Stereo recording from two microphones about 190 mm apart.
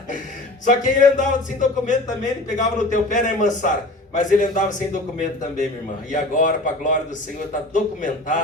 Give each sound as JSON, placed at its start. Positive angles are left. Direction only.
{"t": 0.6, "sound": "a man's voice", "side_deg": 40}
{"t": 6.1, "sound": "a man's voice", "side_deg": 45}